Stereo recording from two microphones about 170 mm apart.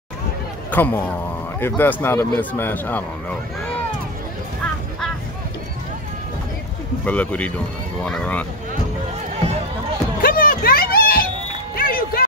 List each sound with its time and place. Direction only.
0.7 s speech: 10° left (ahead or behind)
7.1 s speech: 10° left (ahead or behind)
10.2 s music: 55° left (ahead or behind)